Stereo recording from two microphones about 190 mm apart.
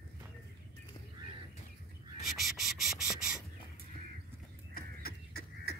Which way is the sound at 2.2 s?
Centre (ahead or behind).